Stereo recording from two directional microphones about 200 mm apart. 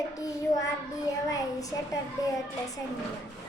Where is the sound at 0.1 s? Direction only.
15° left (ahead or behind).